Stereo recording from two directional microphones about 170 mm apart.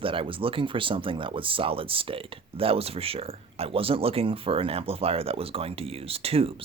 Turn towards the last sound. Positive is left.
turn(degrees=-35)  # may be behind; listen again after turning